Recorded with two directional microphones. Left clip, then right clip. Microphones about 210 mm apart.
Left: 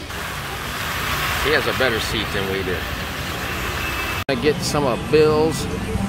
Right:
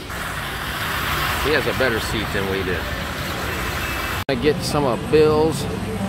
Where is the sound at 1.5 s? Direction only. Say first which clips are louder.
Left 1 dB; centre (ahead or behind).